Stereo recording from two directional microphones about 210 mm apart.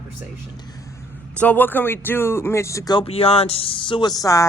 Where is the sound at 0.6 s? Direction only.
15° left (ahead or behind).